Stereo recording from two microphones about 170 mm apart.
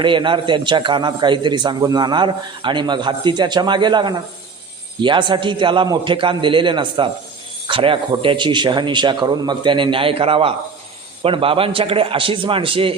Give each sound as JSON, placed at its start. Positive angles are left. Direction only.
{"t": 0.0, "sound": "a man's voice", "side_deg": -30}